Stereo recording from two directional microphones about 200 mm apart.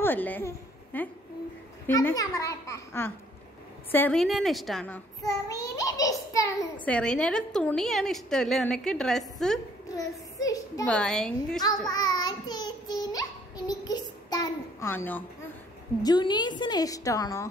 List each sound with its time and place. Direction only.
0.0 s a woman's voice: 10° left (ahead or behind)
9.9 s a child's voice: 15° left (ahead or behind)
10.9 s a woman's voice: 5° left (ahead or behind)
11.9 s child singing: 20° left (ahead or behind)
16.0 s a woman's voice: 20° left (ahead or behind)